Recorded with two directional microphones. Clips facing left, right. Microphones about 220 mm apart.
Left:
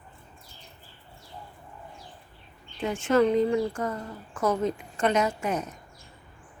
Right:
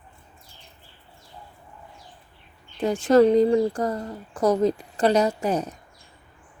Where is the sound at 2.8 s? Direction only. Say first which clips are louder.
Right 6 dB; 35° right (ahead or behind).